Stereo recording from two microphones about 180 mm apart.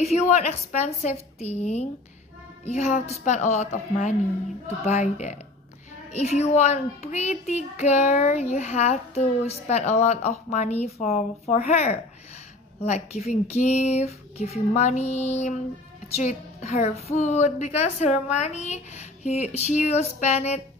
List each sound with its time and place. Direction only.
0.0 s a woman's voice: 35° left (ahead or behind)